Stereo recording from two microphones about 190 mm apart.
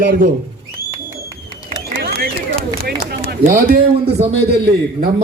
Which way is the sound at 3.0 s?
50° right (ahead or behind).